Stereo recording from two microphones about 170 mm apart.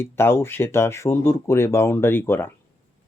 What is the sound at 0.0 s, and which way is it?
Speech, 15° left (ahead or behind).